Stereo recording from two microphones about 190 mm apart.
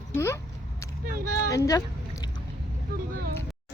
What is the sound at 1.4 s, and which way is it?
Speech, 15° left (ahead or behind).